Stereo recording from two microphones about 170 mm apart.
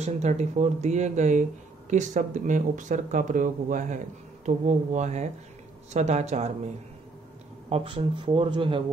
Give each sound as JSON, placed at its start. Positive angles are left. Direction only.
{"t": 0.0, "sound": "speech", "side_deg": -40}
{"t": 7.7, "sound": "speech", "side_deg": -30}